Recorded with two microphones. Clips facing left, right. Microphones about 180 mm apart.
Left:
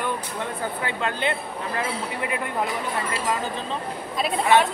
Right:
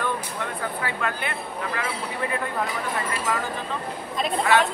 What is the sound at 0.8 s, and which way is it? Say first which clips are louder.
Speech: left 4 dB; 25° left (ahead or behind).